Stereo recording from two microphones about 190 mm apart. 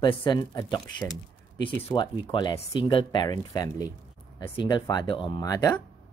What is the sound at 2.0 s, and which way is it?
Speech, 25° left (ahead or behind).